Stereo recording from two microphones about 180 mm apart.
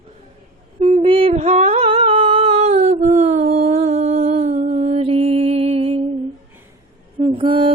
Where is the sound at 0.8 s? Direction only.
35° right (ahead or behind).